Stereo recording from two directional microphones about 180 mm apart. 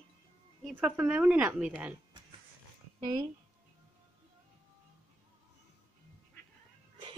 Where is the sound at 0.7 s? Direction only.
5° right (ahead or behind).